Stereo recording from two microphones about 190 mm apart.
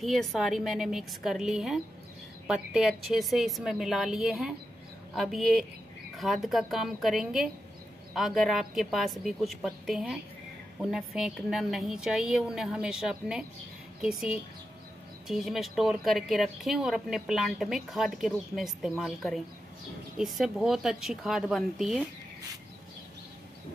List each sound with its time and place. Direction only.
0.0 s speech: centre (ahead or behind)